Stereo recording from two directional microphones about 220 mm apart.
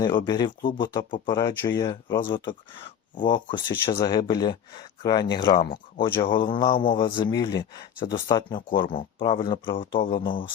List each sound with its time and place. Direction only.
0.3 s speech: 20° left (ahead or behind)